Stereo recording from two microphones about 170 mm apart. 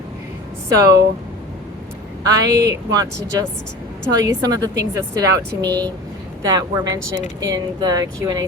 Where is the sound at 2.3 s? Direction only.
20° right (ahead or behind).